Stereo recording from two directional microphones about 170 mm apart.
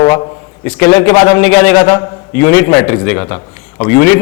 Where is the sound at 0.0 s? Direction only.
25° left (ahead or behind).